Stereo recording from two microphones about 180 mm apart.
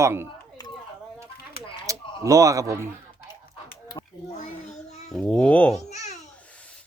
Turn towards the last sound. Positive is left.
turn(degrees=40)  # may be behind; listen again after turning